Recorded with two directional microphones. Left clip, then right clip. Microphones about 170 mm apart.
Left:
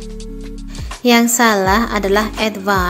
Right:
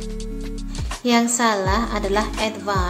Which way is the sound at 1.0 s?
30° left (ahead or behind).